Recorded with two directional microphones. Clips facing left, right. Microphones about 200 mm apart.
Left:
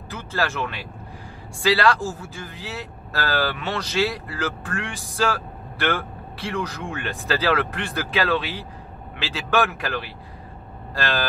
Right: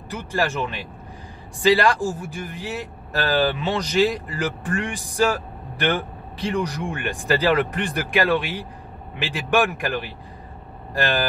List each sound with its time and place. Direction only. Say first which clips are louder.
0.1 s speech: right 2 dB; 15° right (ahead or behind)